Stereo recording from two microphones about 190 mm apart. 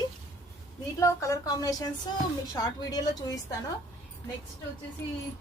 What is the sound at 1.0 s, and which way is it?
Speech, 15° left (ahead or behind).